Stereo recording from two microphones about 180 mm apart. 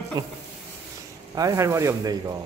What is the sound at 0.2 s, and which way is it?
Speech, 20° right (ahead or behind).